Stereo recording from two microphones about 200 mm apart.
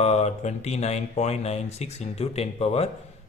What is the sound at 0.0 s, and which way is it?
Speech, 35° left (ahead or behind).